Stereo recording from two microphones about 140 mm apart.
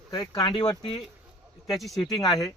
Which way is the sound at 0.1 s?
30° left (ahead or behind).